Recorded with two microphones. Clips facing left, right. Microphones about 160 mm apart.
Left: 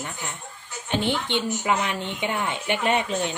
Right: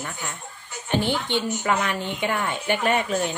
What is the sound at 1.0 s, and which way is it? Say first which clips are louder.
Speech: even; 20° left (ahead or behind).